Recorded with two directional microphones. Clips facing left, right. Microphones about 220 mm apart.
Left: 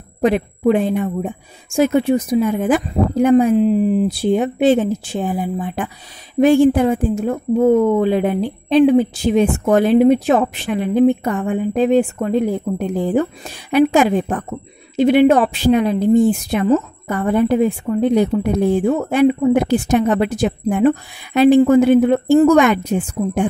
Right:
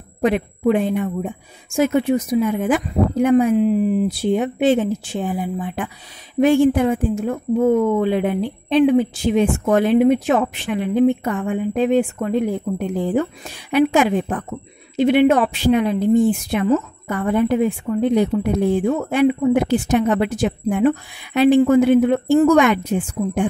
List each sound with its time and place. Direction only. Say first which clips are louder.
0.2 s a woman's voice: left 2 dB; 35° left (ahead or behind)